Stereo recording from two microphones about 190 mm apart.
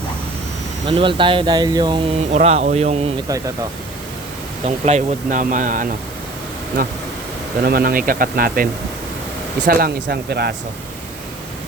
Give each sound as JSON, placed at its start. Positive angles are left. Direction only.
{"t": 0.9, "sound": "speech", "side_deg": -25}
{"t": 2.3, "sound": "speech", "side_deg": -35}
{"t": 4.6, "sound": "speech", "side_deg": -35}
{"t": 7.6, "sound": "speech", "side_deg": -50}
{"t": 9.6, "sound": "speech", "side_deg": -55}